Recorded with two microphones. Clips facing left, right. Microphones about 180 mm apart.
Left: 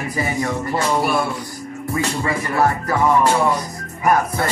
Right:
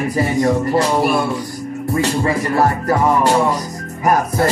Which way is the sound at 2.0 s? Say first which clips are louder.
Right 5 dB; 35° right (ahead or behind).